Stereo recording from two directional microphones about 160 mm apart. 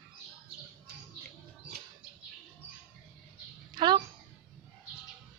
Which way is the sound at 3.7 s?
30° right (ahead or behind).